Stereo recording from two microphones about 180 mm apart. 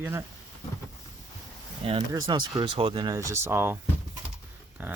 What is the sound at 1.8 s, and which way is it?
Speech, 35° right (ahead or behind).